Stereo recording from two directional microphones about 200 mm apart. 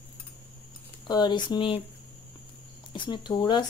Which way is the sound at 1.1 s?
20° left (ahead or behind).